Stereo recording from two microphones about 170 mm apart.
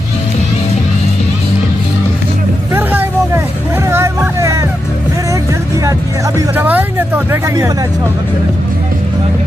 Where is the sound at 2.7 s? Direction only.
10° right (ahead or behind).